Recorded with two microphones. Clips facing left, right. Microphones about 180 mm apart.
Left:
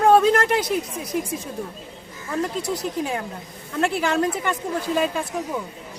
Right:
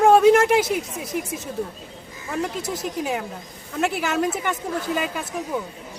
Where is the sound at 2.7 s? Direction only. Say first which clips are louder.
Left 1 dB; 5° right (ahead or behind).